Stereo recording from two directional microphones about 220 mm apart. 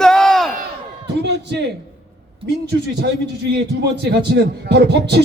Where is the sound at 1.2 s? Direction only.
50° right (ahead or behind).